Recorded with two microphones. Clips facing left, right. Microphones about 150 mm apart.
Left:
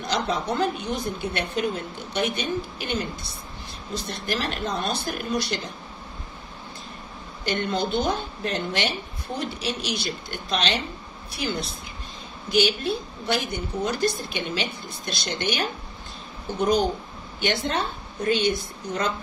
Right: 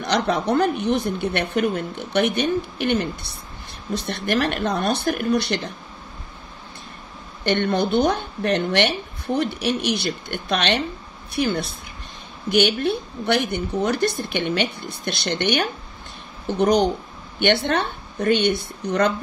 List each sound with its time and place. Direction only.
0.0 s a woman's voice: 60° right (ahead or behind)
7.4 s a woman's voice: 60° right (ahead or behind)